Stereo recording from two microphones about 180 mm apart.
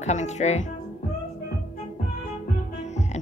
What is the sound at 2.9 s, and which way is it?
Music, 40° left (ahead or behind).